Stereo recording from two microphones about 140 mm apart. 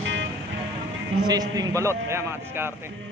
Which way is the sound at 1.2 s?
25° right (ahead or behind).